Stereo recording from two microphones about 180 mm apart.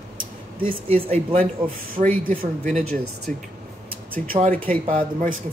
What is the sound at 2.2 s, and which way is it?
Speech, 50° right (ahead or behind).